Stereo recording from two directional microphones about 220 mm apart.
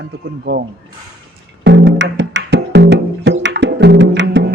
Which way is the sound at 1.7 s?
55° right (ahead or behind).